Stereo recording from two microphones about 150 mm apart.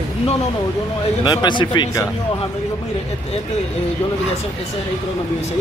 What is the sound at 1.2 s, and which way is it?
Speech, 30° left (ahead or behind).